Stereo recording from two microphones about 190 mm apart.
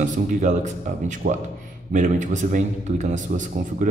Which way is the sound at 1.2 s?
50° right (ahead or behind).